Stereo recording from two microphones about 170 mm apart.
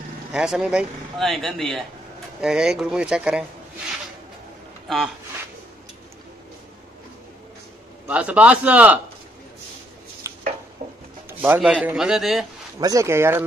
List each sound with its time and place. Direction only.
0.3 s speech: 5° right (ahead or behind)
4.8 s speech: centre (ahead or behind)
8.1 s a man's voice: 5° right (ahead or behind)
10.3 s a sound: 15° right (ahead or behind)
10.8 s rub: 45° right (ahead or behind)
11.2 s speech: 10° right (ahead or behind)
12.8 s a man's voice: 20° right (ahead or behind)